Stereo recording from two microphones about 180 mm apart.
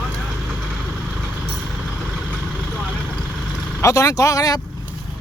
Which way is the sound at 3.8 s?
20° left (ahead or behind).